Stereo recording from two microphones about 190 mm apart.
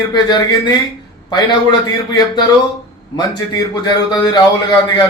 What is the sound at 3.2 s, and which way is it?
A man's voice, 20° left (ahead or behind).